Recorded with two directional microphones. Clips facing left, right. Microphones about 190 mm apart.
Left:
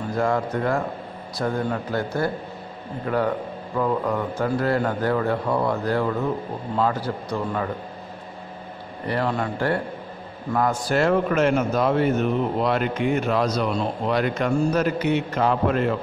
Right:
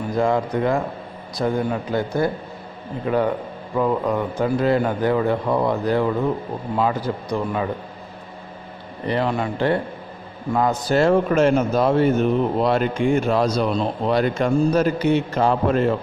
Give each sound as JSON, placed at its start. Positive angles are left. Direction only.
{"t": 0.0, "sound": "a man's voice", "side_deg": -15}
{"t": 9.0, "sound": "a man's voice", "side_deg": -20}